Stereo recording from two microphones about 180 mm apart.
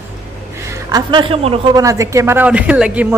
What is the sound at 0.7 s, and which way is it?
Speech, 25° right (ahead or behind).